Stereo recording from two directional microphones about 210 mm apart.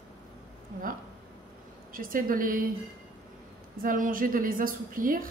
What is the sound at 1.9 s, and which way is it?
Speech, 40° right (ahead or behind).